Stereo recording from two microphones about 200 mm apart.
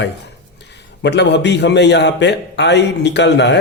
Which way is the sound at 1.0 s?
60° left (ahead or behind).